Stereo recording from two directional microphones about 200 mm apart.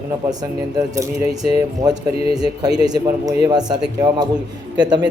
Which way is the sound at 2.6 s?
20° right (ahead or behind).